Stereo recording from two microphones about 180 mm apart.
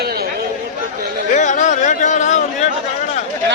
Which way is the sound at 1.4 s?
40° left (ahead or behind).